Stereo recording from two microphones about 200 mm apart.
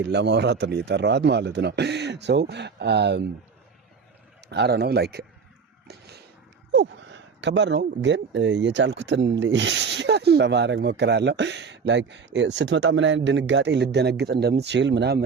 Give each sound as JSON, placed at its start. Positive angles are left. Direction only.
{"t": 0.0, "sound": "speech", "side_deg": -60}
{"t": 4.4, "sound": "speech", "side_deg": -55}
{"t": 6.7, "sound": "speech", "side_deg": -65}